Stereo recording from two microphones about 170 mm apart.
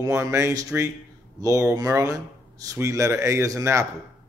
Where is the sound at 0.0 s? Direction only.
20° right (ahead or behind).